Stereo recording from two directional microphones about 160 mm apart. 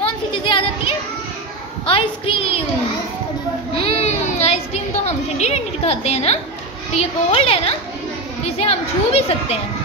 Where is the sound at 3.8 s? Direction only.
35° left (ahead or behind).